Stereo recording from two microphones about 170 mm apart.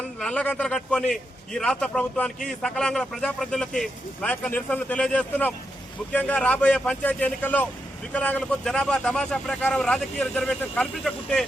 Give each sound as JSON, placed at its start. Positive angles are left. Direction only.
{"t": 0.2, "sound": "a man's voice", "side_deg": 5}